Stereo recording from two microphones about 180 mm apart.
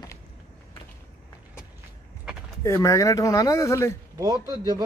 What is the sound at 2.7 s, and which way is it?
Speech, 15° left (ahead or behind).